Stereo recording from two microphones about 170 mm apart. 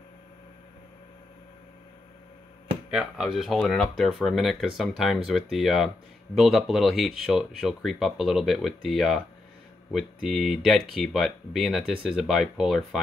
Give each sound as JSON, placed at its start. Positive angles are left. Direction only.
{"t": 2.9, "sound": "speech", "side_deg": -5}